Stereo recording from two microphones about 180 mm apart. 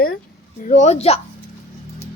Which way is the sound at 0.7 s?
40° left (ahead or behind).